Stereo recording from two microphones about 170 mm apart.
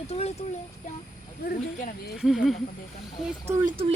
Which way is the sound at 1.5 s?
50° left (ahead or behind).